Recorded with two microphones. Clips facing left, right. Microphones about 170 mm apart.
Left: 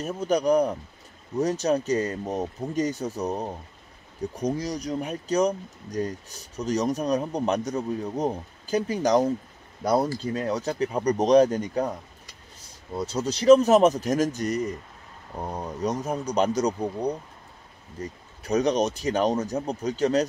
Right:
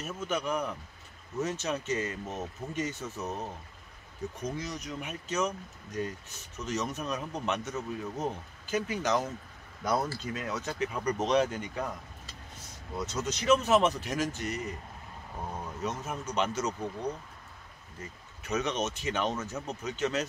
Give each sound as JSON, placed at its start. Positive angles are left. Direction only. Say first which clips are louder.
{"t": 0.0, "sound": "speech", "louder": "left 9 dB", "side_deg": 35}
{"t": 12.9, "sound": "speech", "louder": "left 6 dB", "side_deg": 35}